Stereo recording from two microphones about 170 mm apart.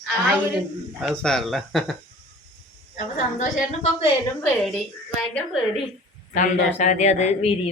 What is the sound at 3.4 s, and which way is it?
Speech, 50° left (ahead or behind).